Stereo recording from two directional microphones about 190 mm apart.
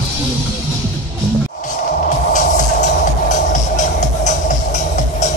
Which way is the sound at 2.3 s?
40° left (ahead or behind).